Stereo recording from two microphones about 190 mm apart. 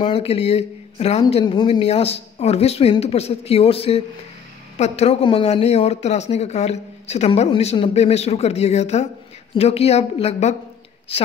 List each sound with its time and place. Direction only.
0.0 s speech: 30° left (ahead or behind)